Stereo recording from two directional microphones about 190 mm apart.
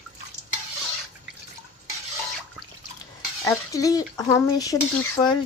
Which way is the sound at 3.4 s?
15° left (ahead or behind).